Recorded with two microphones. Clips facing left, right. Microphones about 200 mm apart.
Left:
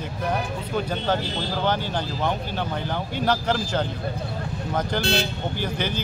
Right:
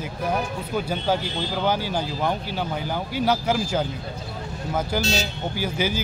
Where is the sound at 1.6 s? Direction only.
10° right (ahead or behind).